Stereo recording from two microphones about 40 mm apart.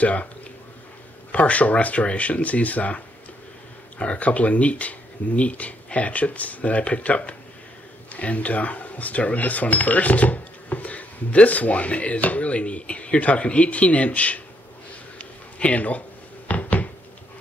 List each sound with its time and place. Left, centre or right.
0.0 s speech: left
1.3 s speech: left
4.0 s speech: left
15.1 s a sound: left